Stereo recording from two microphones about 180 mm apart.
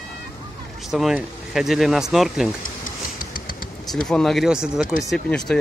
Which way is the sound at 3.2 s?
50° left (ahead or behind).